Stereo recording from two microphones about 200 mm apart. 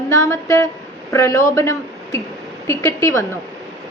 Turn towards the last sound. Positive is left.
turn(degrees=15)  # may be behind; listen again after turning